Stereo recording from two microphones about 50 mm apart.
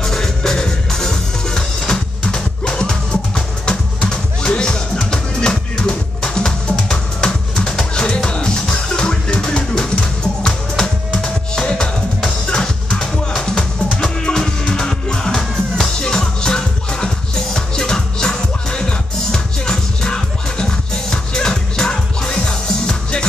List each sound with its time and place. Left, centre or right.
0.0 s music: centre